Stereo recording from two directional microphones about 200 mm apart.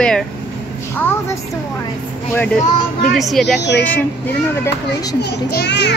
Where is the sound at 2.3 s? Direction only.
10° left (ahead or behind).